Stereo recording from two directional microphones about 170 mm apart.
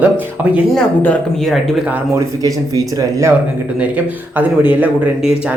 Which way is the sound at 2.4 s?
20° right (ahead or behind).